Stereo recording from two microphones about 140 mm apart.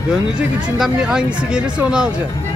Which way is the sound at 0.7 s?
5° right (ahead or behind).